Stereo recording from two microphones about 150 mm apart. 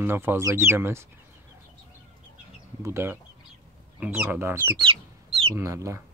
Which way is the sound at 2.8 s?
15° right (ahead or behind).